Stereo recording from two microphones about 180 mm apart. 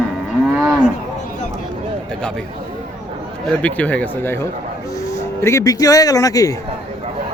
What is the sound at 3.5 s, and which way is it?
Speech, 10° left (ahead or behind).